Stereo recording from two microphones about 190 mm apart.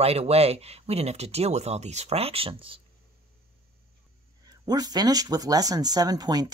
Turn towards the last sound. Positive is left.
turn(degrees=-20)  # may be behind; listen again after turning